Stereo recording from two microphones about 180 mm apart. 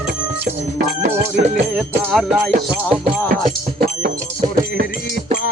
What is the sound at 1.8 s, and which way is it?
Music, centre (ahead or behind).